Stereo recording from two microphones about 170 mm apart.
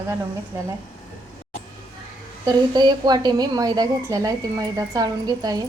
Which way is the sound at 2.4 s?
25° right (ahead or behind).